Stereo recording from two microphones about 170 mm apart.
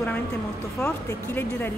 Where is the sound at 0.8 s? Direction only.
15° left (ahead or behind).